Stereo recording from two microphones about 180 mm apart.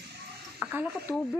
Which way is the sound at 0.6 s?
10° right (ahead or behind).